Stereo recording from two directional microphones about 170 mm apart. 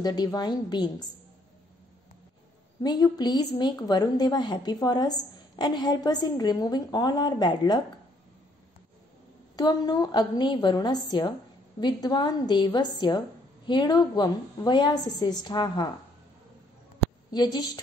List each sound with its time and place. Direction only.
0.0 s a woman's voice: 25° left (ahead or behind)
2.8 s a woman's voice: 25° left (ahead or behind)
9.6 s a woman's voice: 25° left (ahead or behind)
17.3 s a woman's voice: 25° left (ahead or behind)